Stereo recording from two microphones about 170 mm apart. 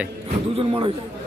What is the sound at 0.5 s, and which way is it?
Speech, 35° right (ahead or behind).